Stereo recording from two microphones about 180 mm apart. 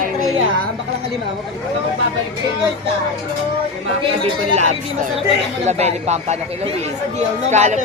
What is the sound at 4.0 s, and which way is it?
Speech, 35° right (ahead or behind).